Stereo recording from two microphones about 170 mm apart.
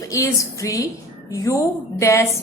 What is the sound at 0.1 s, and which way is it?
A woman's voice, 20° left (ahead or behind).